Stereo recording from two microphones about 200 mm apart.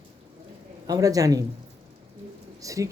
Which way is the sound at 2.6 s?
15° right (ahead or behind).